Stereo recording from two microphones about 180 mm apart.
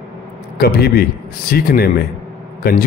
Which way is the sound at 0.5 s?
60° left (ahead or behind).